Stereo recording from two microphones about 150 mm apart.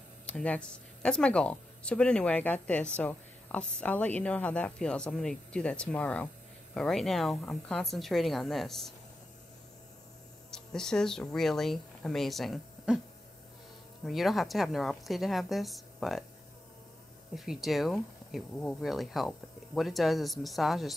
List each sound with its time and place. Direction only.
0.3 s speech: 10° left (ahead or behind)
10.5 s speech: 5° left (ahead or behind)
14.0 s speech: centre (ahead or behind)
17.5 s speech: centre (ahead or behind)